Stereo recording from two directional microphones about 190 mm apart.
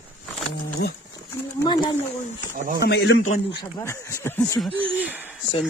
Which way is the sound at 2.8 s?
60° left (ahead or behind).